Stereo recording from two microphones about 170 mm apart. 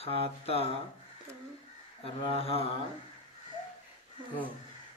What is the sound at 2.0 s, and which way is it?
Speech, 35° left (ahead or behind).